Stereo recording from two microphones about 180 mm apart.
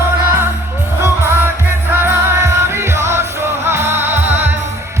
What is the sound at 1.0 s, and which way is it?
Music, 15° right (ahead or behind).